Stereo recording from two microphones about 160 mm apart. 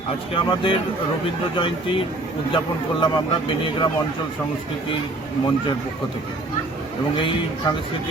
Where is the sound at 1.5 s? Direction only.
30° left (ahead or behind).